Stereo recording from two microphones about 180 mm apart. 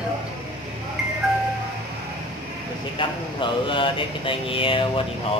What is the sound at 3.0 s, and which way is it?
Mantra, 25° left (ahead or behind).